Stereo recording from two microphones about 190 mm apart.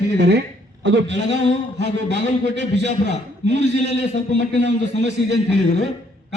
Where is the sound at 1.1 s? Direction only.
35° left (ahead or behind).